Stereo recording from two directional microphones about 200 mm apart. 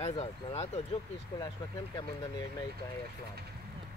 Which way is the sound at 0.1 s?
30° left (ahead or behind).